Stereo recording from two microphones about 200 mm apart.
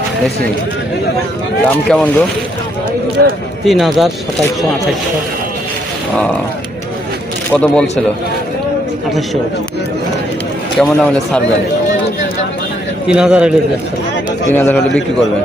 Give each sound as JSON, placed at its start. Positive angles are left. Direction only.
{"t": 1.6, "sound": "a man's voice", "side_deg": 5}
{"t": 3.2, "sound": "speech", "side_deg": -55}
{"t": 3.7, "sound": "a man's voice", "side_deg": 0}
{"t": 7.5, "sound": "a man's voice", "side_deg": 5}
{"t": 10.8, "sound": "a man's voice", "side_deg": 0}
{"t": 13.1, "sound": "a man's voice", "side_deg": -5}
{"t": 14.5, "sound": "a man's voice", "side_deg": 10}